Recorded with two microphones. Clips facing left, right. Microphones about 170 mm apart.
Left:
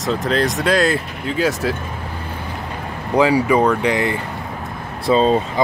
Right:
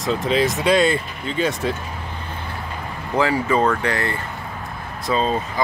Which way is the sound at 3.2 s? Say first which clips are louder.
Left 4 dB; 15° left (ahead or behind).